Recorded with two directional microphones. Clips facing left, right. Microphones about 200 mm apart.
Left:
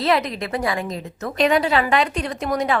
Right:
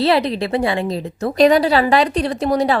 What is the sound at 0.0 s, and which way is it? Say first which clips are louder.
A woman's voice: right 4 dB; 30° right (ahead or behind).